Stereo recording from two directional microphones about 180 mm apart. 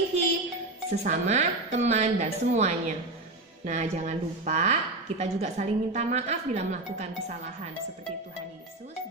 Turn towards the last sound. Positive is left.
turn(degrees=-40)  # may be behind; listen again after turning